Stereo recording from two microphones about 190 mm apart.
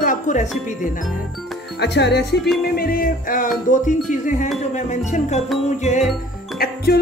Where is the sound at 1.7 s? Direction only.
65° left (ahead or behind).